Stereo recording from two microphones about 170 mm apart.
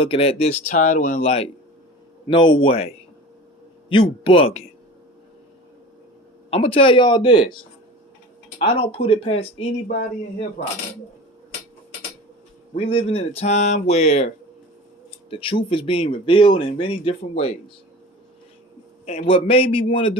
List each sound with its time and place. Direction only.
0.0 s speech: 35° left (ahead or behind)
0.7 s speech: 50° left (ahead or behind)
6.5 s speech: 35° left (ahead or behind)
8.5 s speech: 35° left (ahead or behind)
12.7 s speech: 35° left (ahead or behind)
19.0 s speech: 35° left (ahead or behind)